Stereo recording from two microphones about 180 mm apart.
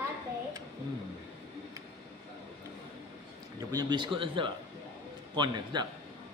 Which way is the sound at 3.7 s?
25° right (ahead or behind).